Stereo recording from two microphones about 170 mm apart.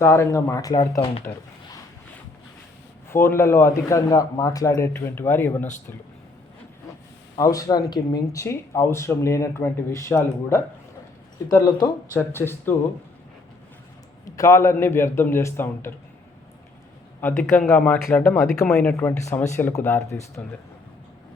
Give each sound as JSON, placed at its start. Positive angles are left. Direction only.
{"t": 0.0, "sound": "speech", "side_deg": 15}
{"t": 1.3, "sound": "speech", "side_deg": 10}
{"t": 3.1, "sound": "speech", "side_deg": 15}
{"t": 7.3, "sound": "speech", "side_deg": 20}
{"t": 11.4, "sound": "speech", "side_deg": 25}
{"t": 14.3, "sound": "speech", "side_deg": 20}
{"t": 17.2, "sound": "speech", "side_deg": 10}